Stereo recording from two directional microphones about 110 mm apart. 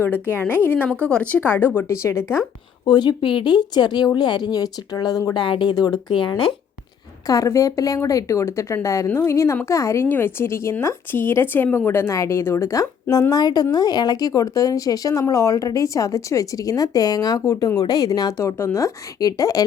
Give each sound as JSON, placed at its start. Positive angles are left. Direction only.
{"t": 0.0, "sound": "speech", "side_deg": 20}
{"t": 2.8, "sound": "a woman's voice", "side_deg": 40}
{"t": 7.3, "sound": "a woman's voice", "side_deg": 30}